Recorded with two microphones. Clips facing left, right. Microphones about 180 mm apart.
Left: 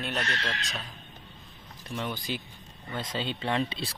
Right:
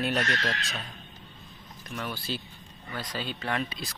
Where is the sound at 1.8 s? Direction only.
25° left (ahead or behind).